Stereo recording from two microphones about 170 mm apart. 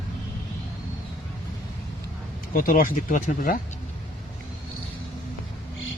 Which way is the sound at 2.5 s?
60° left (ahead or behind).